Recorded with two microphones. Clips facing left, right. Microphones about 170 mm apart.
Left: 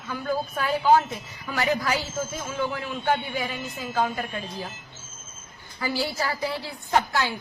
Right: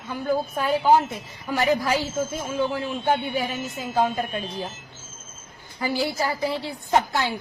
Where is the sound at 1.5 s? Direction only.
20° right (ahead or behind).